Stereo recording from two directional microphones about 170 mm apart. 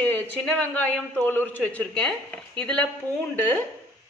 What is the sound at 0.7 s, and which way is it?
A woman's voice, 10° left (ahead or behind).